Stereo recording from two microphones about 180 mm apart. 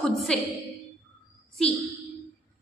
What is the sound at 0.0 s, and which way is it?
Speech, centre (ahead or behind).